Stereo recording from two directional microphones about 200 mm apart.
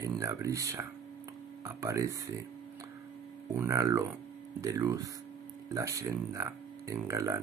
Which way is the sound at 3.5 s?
15° right (ahead or behind).